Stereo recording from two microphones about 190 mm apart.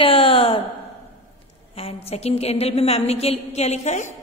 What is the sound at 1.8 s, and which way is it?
A woman's voice, 30° left (ahead or behind).